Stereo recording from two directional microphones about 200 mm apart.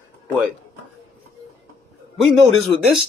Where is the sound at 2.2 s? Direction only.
Centre (ahead or behind).